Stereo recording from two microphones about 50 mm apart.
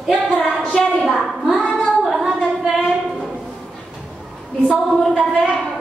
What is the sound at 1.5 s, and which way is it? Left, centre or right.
Child singing, centre.